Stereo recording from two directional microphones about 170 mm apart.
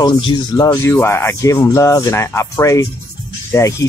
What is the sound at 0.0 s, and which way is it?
Speech, 25° left (ahead or behind).